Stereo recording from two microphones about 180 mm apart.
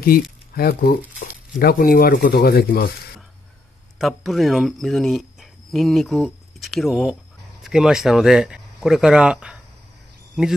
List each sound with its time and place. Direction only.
0.0 s speech: 55° left (ahead or behind)
4.0 s speech: centre (ahead or behind)